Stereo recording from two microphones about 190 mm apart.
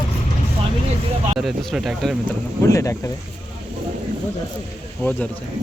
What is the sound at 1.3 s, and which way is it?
Speech, centre (ahead or behind).